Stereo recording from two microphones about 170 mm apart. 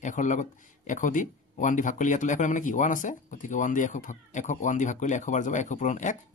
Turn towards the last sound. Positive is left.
turn(degrees=45)  # may be behind; listen again after turning